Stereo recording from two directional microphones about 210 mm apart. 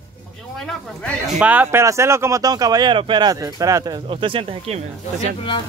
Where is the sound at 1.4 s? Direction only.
5° right (ahead or behind); by 5.3 s 30° right (ahead or behind).